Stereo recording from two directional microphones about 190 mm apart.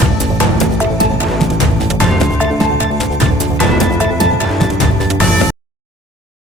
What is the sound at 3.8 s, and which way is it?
Music, centre (ahead or behind).